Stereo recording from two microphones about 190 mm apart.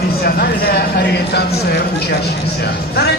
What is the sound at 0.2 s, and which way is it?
A man's voice, 55° left (ahead or behind).